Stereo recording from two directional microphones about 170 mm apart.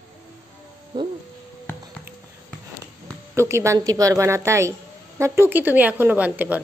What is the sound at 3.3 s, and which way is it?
A woman's voice, 15° right (ahead or behind).